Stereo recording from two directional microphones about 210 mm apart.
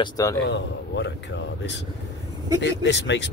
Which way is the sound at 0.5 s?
55° left (ahead or behind).